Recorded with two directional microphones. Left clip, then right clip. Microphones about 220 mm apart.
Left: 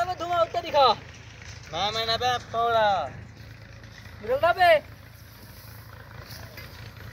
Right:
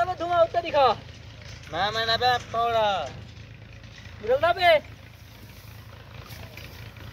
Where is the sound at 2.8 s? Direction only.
45° right (ahead or behind).